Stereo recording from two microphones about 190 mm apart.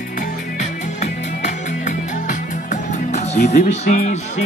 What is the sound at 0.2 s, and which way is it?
Music, 40° left (ahead or behind).